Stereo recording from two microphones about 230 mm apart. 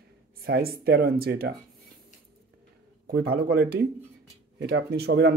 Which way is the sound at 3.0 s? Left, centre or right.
Right.